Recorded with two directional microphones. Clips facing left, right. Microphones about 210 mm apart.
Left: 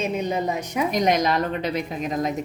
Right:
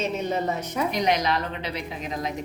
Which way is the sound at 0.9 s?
45° left (ahead or behind).